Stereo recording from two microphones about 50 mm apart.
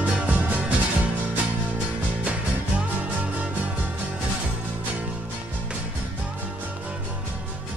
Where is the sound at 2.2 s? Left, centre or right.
Right.